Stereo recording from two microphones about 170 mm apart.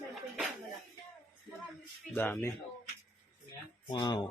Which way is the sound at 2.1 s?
10° left (ahead or behind).